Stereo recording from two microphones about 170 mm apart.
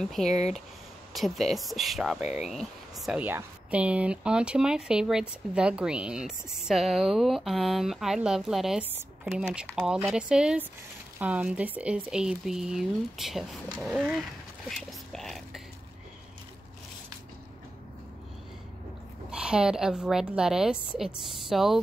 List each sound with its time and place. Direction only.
0.0 s speech: centre (ahead or behind)
0.3 s speech: 40° left (ahead or behind)
1.1 s speech: centre (ahead or behind)
2.2 s speech: 40° left (ahead or behind)
2.5 s speech: centre (ahead or behind)
14.7 s a sound: centre (ahead or behind)
19.3 s speech: 5° right (ahead or behind)